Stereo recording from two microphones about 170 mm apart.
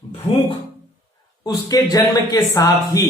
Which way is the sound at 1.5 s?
20° left (ahead or behind).